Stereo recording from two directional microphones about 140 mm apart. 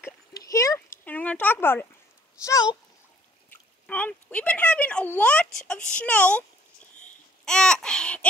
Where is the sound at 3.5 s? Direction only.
10° left (ahead or behind).